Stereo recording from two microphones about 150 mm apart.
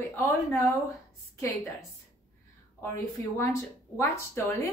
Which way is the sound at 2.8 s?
15° left (ahead or behind).